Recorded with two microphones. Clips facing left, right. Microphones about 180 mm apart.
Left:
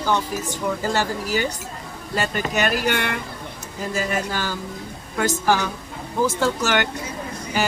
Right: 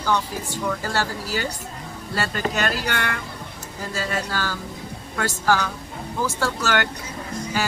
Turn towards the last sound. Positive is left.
turn(degrees=20)  # may be behind; listen again after turning